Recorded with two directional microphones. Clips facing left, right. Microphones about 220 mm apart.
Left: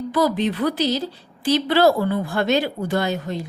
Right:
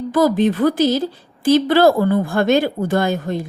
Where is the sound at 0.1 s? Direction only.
50° right (ahead or behind).